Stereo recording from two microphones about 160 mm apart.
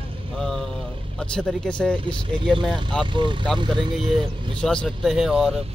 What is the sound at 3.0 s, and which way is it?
Speech, 30° right (ahead or behind).